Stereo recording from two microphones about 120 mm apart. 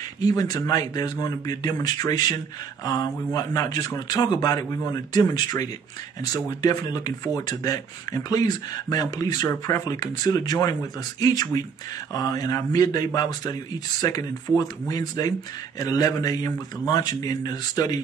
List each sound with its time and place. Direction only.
0.2 s speech: 30° left (ahead or behind)